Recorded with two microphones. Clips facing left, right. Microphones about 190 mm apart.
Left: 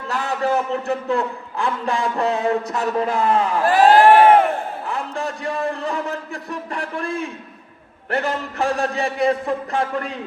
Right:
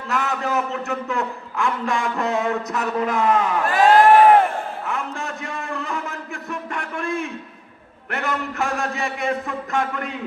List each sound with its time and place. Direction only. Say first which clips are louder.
0.1 s a man's voice: left 2 dB; 30° left (ahead or behind)
4.9 s a sound: left 2 dB; 35° left (ahead or behind)
8.1 s a man's voice: left 3 dB; 35° left (ahead or behind)